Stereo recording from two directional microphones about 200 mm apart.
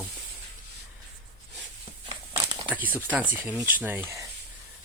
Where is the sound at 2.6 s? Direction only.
10° right (ahead or behind).